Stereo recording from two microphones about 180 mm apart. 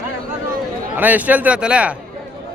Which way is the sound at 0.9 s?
10° right (ahead or behind).